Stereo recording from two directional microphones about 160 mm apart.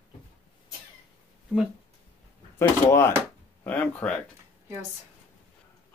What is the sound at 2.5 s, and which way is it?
Speech, 15° left (ahead or behind).